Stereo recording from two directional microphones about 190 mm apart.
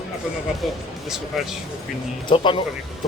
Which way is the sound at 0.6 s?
Centre (ahead or behind).